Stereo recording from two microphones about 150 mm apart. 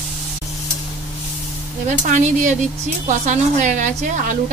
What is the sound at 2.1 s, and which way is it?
A woman's voice, 55° right (ahead or behind).